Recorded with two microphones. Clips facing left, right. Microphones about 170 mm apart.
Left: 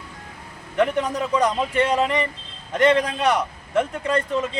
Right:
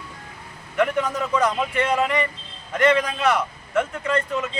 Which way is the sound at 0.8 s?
35° left (ahead or behind).